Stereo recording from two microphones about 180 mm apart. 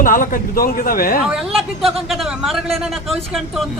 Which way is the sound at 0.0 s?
50° left (ahead or behind).